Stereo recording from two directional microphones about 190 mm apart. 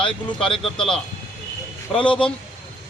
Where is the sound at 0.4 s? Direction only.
30° left (ahead or behind).